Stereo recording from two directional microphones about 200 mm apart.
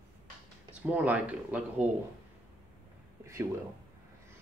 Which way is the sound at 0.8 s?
5° right (ahead or behind).